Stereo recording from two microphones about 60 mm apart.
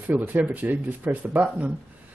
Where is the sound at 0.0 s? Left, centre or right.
Right.